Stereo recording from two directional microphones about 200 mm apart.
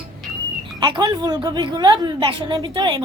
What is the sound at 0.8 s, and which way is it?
A woman's voice, 20° right (ahead or behind).